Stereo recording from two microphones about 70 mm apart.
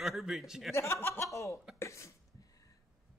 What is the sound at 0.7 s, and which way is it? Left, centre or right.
Speech, left.